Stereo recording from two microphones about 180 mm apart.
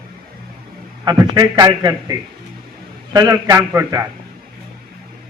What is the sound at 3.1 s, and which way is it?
Speech, 20° right (ahead or behind).